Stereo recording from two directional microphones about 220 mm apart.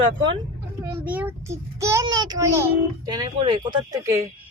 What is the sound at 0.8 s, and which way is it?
A child's voice, 5° right (ahead or behind).